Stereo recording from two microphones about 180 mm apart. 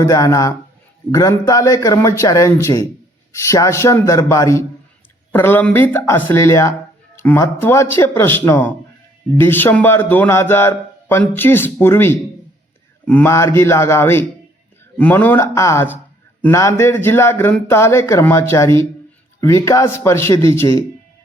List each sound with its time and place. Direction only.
0.0 s speech: 15° left (ahead or behind)